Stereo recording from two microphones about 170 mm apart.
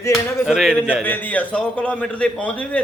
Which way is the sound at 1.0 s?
10° left (ahead or behind).